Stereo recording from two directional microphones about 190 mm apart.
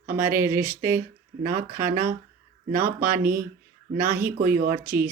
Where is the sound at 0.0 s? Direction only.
10° right (ahead or behind).